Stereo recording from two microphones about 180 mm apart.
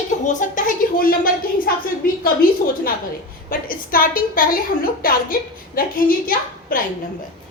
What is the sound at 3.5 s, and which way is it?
A woman's voice, 50° left (ahead or behind).